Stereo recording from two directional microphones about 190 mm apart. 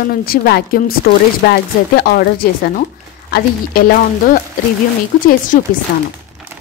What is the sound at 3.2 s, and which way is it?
Speech, 55° left (ahead or behind).